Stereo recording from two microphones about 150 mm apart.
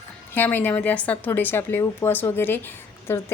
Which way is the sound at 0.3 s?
15° left (ahead or behind).